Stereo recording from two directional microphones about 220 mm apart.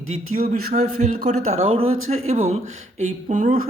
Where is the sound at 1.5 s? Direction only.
25° right (ahead or behind).